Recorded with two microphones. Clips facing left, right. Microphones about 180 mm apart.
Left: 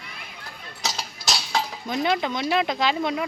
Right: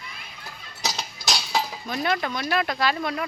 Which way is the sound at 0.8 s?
Centre (ahead or behind).